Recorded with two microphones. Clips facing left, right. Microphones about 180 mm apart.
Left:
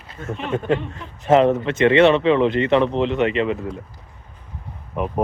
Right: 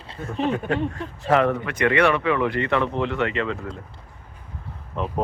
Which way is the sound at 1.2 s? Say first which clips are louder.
Left 5 dB; 20° left (ahead or behind).